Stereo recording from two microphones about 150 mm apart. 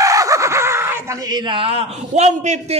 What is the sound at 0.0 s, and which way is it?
Screaming, 20° right (ahead or behind).